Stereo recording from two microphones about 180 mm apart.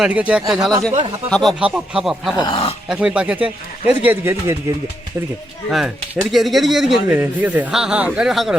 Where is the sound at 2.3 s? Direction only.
25° left (ahead or behind).